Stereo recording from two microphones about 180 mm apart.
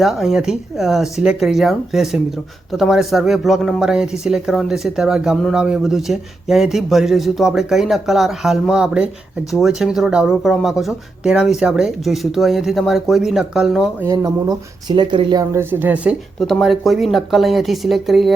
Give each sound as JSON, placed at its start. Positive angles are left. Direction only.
{"t": 0.0, "sound": "speech", "side_deg": 0}
{"t": 14.1, "sound": "speech", "side_deg": -20}
{"t": 16.4, "sound": "speech", "side_deg": 0}